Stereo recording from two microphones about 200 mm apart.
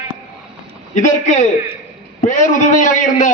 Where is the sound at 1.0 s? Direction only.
35° left (ahead or behind).